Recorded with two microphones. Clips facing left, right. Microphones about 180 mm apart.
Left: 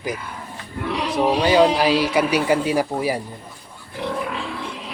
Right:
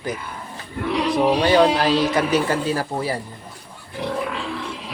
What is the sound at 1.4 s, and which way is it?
Speech, 10° left (ahead or behind).